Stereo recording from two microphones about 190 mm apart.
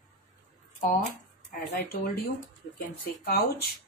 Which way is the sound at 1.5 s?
50° left (ahead or behind).